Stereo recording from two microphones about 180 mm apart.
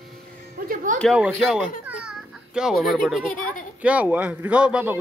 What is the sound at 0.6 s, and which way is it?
Music, 50° right (ahead or behind).